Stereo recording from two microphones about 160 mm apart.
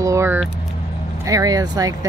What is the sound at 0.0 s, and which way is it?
Vehicle, 15° right (ahead or behind).